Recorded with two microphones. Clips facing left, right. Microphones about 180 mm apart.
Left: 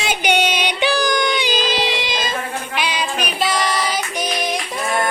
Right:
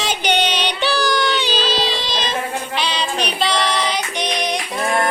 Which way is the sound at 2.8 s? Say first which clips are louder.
Left 1 dB; 10° left (ahead or behind).